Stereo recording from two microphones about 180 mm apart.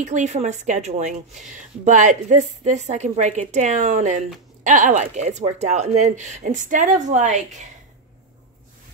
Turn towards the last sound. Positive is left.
turn(degrees=-40)  # may be behind; listen again after turning